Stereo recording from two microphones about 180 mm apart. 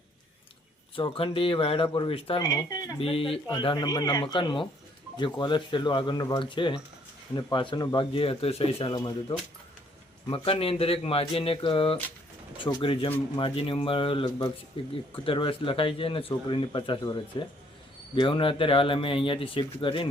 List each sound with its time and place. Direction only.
0.9 s speech: 30° left (ahead or behind)
3.0 s speech: 30° left (ahead or behind)
10.2 s speech: 30° left (ahead or behind)